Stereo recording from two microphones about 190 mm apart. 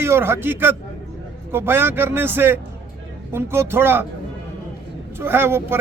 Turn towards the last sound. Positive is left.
turn(degrees=-10)  # may be behind; listen again after turning